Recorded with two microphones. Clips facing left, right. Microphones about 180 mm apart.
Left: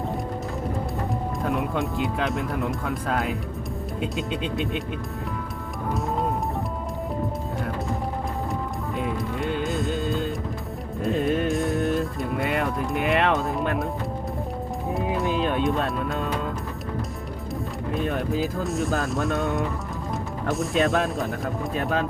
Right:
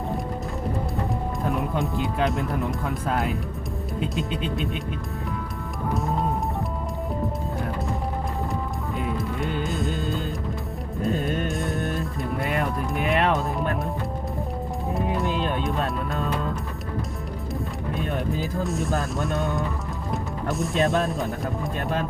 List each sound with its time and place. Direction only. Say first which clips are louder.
1.5 s speech: even; centre (ahead or behind)
5.9 s music: even; centre (ahead or behind)
9.0 s music: even; centre (ahead or behind)
15.4 s speech: left 2 dB; centre (ahead or behind)
17.9 s speech: left 3 dB; centre (ahead or behind)